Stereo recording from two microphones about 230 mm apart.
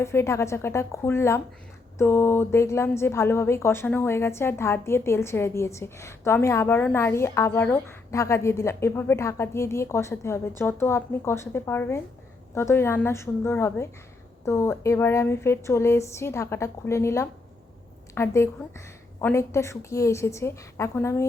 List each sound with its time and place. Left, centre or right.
0.0 s a woman's voice: centre